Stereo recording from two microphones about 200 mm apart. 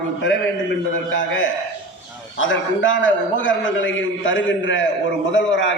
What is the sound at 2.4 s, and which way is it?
A man's voice, 70° left (ahead or behind).